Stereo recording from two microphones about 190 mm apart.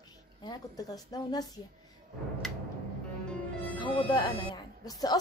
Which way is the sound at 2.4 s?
Centre (ahead or behind).